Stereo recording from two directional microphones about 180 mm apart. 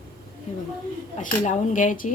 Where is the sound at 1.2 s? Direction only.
45° left (ahead or behind).